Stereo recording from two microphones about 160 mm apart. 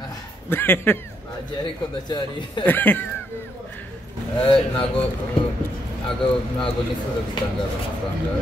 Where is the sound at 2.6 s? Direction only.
10° left (ahead or behind).